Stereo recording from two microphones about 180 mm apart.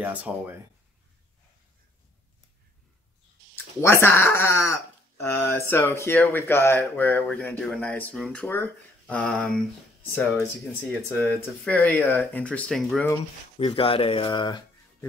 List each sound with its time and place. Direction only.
0.0 s speech: 10° right (ahead or behind)
3.5 s speech: 10° left (ahead or behind)
11.1 s speech: 10° left (ahead or behind)
13.6 s speech: 30° left (ahead or behind)